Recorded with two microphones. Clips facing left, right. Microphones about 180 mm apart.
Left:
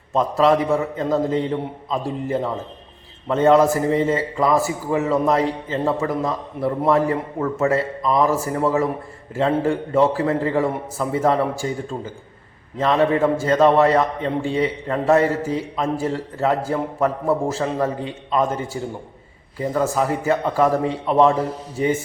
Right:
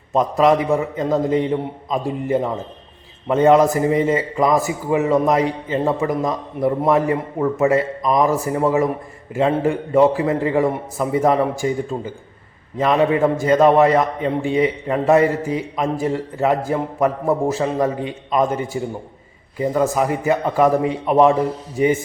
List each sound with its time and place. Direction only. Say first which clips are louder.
0.1 s a man's voice: right 1 dB; 15° right (ahead or behind)
12.8 s a man's voice: right 1 dB; 15° right (ahead or behind)